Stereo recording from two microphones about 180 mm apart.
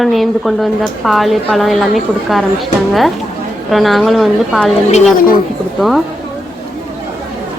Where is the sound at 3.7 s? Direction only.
Centre (ahead or behind).